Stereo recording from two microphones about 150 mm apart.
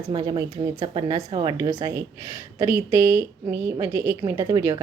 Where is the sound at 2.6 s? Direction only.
15° right (ahead or behind).